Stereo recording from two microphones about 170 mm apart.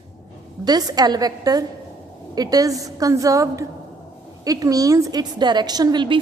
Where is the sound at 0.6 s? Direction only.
25° right (ahead or behind).